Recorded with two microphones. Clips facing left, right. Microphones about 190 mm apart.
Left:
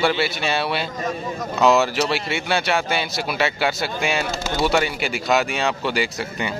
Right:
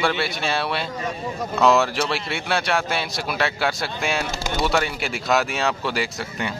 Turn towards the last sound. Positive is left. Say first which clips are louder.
# left 2 dB
turn(degrees=0)  # may be behind; listen again after turning